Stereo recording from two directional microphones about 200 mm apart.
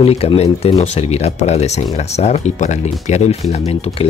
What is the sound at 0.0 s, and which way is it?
Speech, 30° left (ahead or behind).